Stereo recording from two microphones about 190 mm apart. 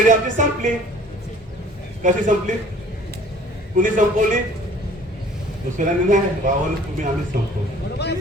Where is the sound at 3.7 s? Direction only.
45° right (ahead or behind).